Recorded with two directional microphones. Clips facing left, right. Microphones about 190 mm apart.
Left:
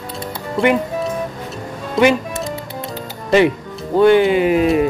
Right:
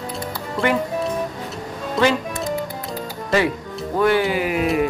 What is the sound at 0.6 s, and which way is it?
Speech, centre (ahead or behind).